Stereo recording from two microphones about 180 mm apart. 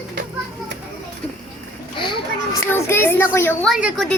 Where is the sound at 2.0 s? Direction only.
25° left (ahead or behind).